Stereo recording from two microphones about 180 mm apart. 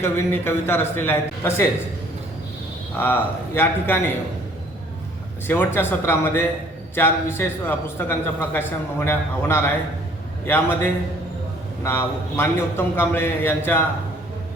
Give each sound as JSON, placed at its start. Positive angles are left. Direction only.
{"t": 0.0, "sound": "a man's voice", "side_deg": 15}
{"t": 3.0, "sound": "a man's voice", "side_deg": 10}
{"t": 5.5, "sound": "a man's voice", "side_deg": 10}